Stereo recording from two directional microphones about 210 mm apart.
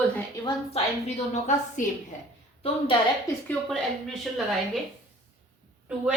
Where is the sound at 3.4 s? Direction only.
Centre (ahead or behind).